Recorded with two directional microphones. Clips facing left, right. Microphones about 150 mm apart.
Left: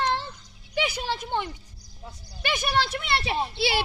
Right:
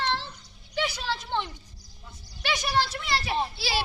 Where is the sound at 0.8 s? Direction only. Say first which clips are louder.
Left 2 dB; 15° left (ahead or behind).